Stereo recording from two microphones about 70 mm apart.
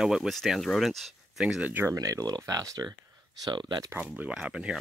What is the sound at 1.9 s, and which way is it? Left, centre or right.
Speech, right.